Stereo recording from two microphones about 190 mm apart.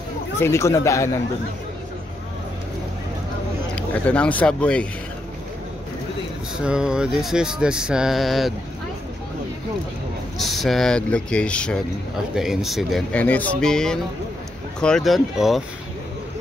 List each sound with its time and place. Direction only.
0.4 s speech: 15° left (ahead or behind)
3.7 s speech: 5° left (ahead or behind)
6.6 s speech: 5° right (ahead or behind)
10.4 s speech: centre (ahead or behind)